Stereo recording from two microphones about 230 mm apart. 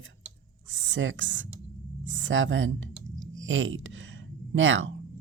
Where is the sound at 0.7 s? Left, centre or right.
Right.